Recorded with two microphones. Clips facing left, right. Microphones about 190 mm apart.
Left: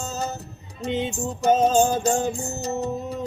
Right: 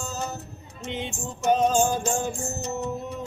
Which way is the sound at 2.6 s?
35° left (ahead or behind).